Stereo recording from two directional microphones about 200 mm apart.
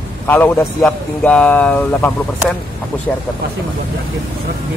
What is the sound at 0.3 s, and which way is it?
A man's voice, 10° left (ahead or behind).